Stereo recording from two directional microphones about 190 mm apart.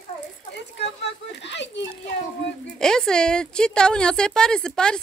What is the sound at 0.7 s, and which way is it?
Speech, 65° left (ahead or behind).